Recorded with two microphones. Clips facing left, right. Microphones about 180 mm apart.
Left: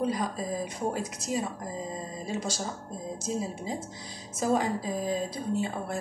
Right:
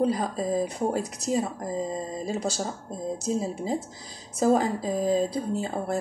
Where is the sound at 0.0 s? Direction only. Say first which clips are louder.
Right 4 dB; 35° right (ahead or behind).